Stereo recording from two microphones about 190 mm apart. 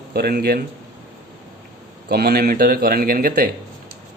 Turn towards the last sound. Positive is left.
turn(degrees=-50)  # may be behind; listen again after turning